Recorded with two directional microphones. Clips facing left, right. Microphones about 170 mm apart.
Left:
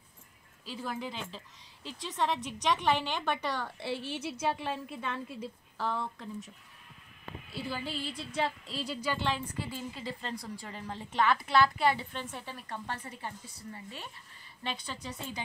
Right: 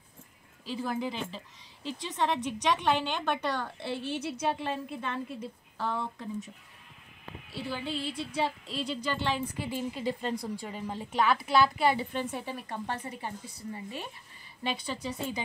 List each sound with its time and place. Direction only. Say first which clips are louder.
0.7 s a woman's voice: right 5 dB; centre (ahead or behind)
2.3 s a woman's voice: right 2 dB; centre (ahead or behind)
7.7 s a woman's voice: right 5 dB; centre (ahead or behind)
9.6 s a woman's voice: right 5 dB; 15° right (ahead or behind)